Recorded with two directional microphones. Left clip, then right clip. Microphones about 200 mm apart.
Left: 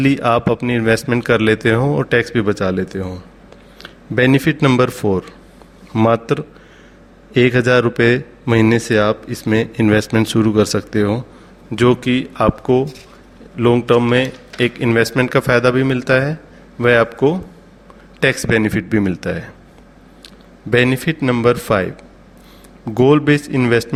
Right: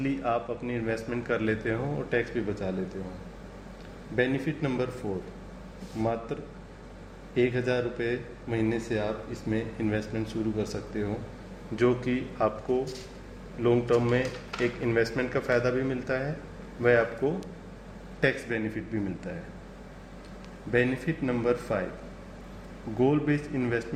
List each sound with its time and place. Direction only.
0.0 s a man's voice: 45° left (ahead or behind)
4.1 s a man's voice: 55° left (ahead or behind)
6.0 s a man's voice: 55° left (ahead or behind)
11.8 s a man's voice: 35° left (ahead or behind)
20.7 s a man's voice: 40° left (ahead or behind)
23.0 s speech: 45° left (ahead or behind)